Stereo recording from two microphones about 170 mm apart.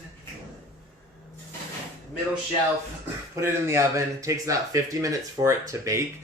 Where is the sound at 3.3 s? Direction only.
15° right (ahead or behind).